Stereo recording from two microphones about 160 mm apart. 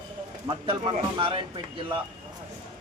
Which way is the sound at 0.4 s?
30° right (ahead or behind).